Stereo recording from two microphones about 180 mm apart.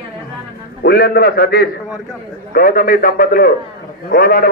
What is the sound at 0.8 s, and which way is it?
A man's voice, 60° left (ahead or behind).